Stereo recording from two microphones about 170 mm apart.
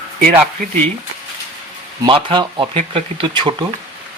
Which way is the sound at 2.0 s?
30° right (ahead or behind).